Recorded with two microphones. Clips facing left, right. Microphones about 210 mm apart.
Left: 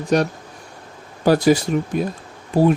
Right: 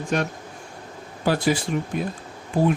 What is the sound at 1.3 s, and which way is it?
Speech, 40° left (ahead or behind).